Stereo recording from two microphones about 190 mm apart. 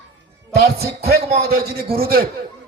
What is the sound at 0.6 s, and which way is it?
A man's voice, 55° right (ahead or behind).